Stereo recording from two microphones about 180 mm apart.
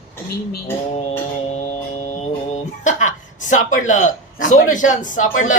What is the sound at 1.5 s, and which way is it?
Music, 40° left (ahead or behind).